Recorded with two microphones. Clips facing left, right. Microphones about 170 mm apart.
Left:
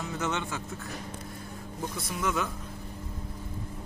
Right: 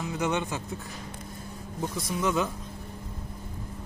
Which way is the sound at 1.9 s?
20° right (ahead or behind).